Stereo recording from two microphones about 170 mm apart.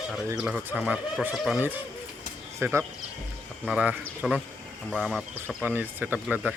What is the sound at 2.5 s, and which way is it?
A man's voice, 15° right (ahead or behind).